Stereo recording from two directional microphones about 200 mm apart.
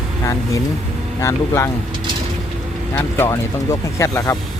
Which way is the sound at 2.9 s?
10° left (ahead or behind).